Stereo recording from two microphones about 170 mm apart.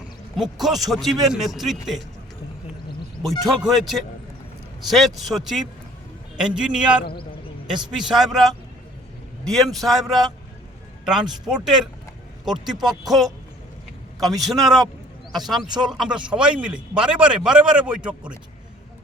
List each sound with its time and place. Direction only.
0.3 s a man's voice: centre (ahead or behind)
3.2 s a man's voice: centre (ahead or behind)
12.7 s speech: 25° right (ahead or behind)
13.1 s a man's voice: centre (ahead or behind)
14.4 s a man's voice: centre (ahead or behind)